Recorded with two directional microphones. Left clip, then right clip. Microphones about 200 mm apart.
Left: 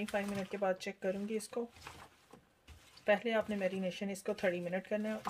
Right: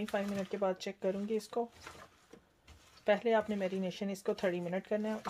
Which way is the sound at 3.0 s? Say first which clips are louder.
Right 2 dB; 40° right (ahead or behind).